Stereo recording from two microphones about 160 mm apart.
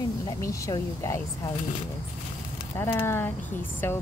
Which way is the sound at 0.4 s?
20° left (ahead or behind).